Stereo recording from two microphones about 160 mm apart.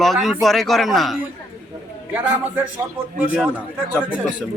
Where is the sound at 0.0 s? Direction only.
Centre (ahead or behind).